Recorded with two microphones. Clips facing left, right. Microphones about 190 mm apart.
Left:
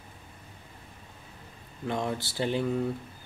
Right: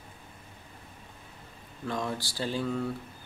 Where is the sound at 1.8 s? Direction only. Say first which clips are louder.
Left 2 dB; 25° left (ahead or behind).